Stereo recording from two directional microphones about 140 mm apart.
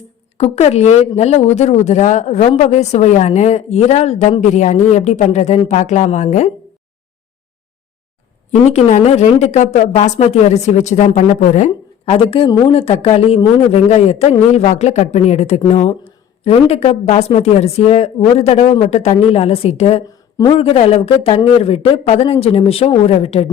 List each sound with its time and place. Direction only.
0.3 s speech: 50° left (ahead or behind)
8.6 s speech: 55° left (ahead or behind)